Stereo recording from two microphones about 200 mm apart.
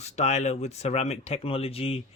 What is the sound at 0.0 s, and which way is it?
Speech, 35° left (ahead or behind).